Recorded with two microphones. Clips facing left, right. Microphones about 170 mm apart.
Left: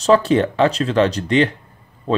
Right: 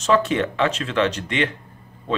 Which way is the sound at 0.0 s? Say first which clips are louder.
Left 5 dB; 35° left (ahead or behind).